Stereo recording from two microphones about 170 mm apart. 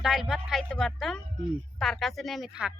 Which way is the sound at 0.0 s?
Centre (ahead or behind).